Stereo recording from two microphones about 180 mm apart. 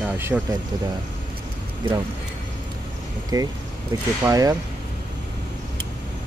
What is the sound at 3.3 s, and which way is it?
Speech, 20° right (ahead or behind).